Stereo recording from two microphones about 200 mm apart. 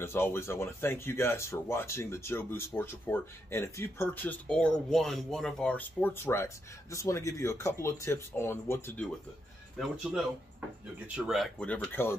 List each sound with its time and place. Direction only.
0.0 s speech: 10° left (ahead or behind)
9.8 s speech: centre (ahead or behind)